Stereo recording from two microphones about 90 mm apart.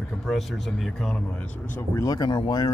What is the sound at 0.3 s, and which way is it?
Speech, 5° left (ahead or behind).